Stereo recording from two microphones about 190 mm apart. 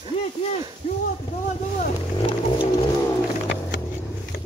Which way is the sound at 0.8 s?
30° left (ahead or behind).